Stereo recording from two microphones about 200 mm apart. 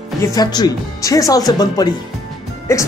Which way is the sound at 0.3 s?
20° left (ahead or behind).